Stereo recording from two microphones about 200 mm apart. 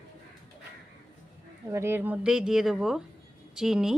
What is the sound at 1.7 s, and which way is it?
Speech, 15° right (ahead or behind).